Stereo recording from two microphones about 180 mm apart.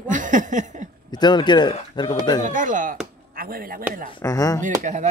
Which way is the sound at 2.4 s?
45° right (ahead or behind).